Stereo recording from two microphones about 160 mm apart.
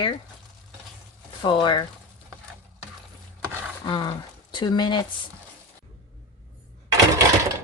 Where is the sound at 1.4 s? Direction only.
30° left (ahead or behind).